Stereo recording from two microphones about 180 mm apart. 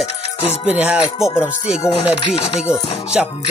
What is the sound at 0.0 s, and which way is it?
Music, 35° left (ahead or behind).